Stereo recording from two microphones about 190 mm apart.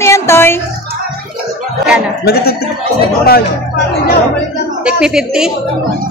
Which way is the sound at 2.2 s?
55° left (ahead or behind).